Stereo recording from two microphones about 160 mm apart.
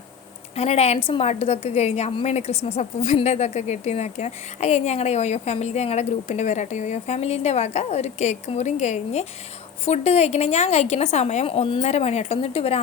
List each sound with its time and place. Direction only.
0.5 s a woman's voice: 40° left (ahead or behind)